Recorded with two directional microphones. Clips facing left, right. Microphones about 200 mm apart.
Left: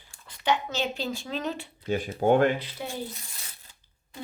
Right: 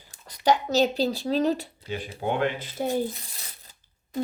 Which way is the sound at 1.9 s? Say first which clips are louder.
Left 6 dB; 45° left (ahead or behind).